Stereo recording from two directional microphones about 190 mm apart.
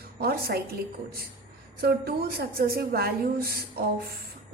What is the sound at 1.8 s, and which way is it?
A woman's voice, 55° right (ahead or behind).